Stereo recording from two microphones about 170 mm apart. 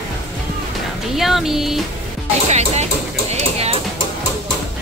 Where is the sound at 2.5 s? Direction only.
40° right (ahead or behind).